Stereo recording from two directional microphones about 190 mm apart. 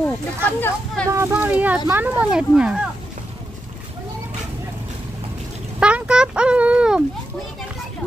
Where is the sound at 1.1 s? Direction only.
10° right (ahead or behind).